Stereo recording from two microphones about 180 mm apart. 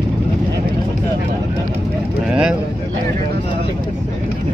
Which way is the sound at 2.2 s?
5° right (ahead or behind).